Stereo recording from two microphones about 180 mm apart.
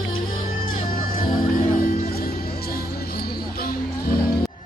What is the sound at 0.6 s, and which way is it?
Music, 50° left (ahead or behind).